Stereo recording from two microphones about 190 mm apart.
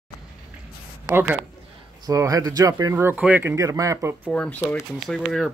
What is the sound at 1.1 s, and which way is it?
Speech, 10° right (ahead or behind).